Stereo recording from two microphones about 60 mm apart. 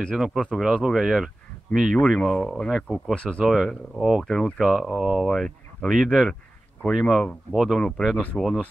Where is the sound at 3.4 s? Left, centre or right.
Centre.